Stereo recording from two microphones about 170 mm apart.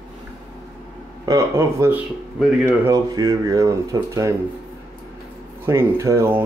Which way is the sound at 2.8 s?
20° right (ahead or behind).